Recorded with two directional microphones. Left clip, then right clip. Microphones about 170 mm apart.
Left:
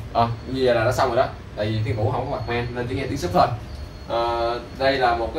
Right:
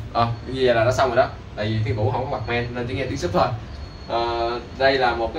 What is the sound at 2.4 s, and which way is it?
A man's voice, centre (ahead or behind).